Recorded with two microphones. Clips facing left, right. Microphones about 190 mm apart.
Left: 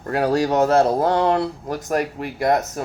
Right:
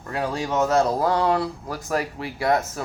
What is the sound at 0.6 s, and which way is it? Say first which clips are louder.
Speech: left 2 dB; 60° left (ahead or behind).